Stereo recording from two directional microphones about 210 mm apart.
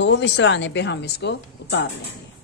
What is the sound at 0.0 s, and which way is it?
A woman's voice, 55° left (ahead or behind).